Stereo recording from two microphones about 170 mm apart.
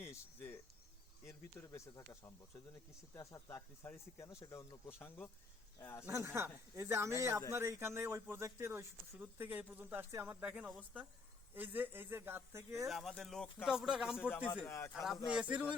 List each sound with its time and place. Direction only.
0.0 s cricket: 15° left (ahead or behind)
1.2 s speech: 15° left (ahead or behind)
6.1 s speech: 15° right (ahead or behind)
12.9 s speech: centre (ahead or behind)
14.4 s speech: 10° left (ahead or behind)
14.9 s speech: centre (ahead or behind)